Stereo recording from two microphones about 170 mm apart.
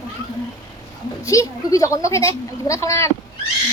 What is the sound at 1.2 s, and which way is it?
Speech, 20° left (ahead or behind).